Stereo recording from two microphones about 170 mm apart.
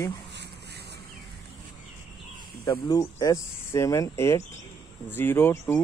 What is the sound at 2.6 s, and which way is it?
Speech, 25° left (ahead or behind).